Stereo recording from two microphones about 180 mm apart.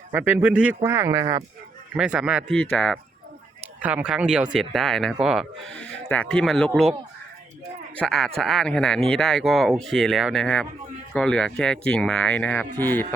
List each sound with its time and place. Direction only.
0.1 s a man's voice: 10° right (ahead or behind)
2.0 s speech: 5° right (ahead or behind)
3.8 s speech: 10° right (ahead or behind)
7.9 s speech: 5° left (ahead or behind)